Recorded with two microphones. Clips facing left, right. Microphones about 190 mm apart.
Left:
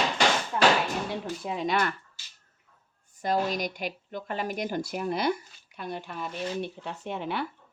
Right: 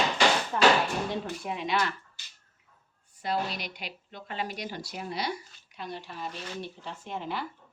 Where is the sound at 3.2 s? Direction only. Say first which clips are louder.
Left 4 dB; 45° left (ahead or behind); by 7.5 s 65° left (ahead or behind).